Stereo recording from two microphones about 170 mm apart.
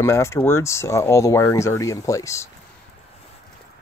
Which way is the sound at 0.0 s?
15° left (ahead or behind).